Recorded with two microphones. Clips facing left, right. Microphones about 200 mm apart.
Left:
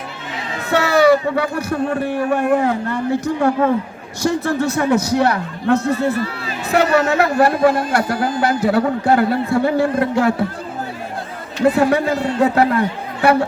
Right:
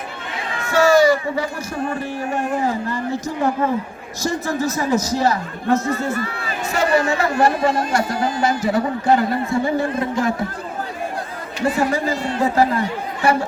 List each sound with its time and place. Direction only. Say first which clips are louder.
0.7 s a man's voice: left 1 dB; 65° left (ahead or behind)
6.2 s a sound: left 2 dB; 50° right (ahead or behind)
6.7 s a man's voice: left 3 dB; 65° left (ahead or behind)
11.6 s a man's voice: left 5 dB; 65° left (ahead or behind)